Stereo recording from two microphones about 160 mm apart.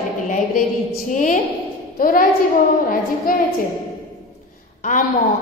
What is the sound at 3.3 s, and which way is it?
Speech, 65° left (ahead or behind).